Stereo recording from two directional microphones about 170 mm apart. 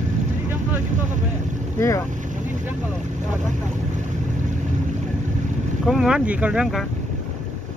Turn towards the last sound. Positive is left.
turn(degrees=-5)  # may be behind; listen again after turning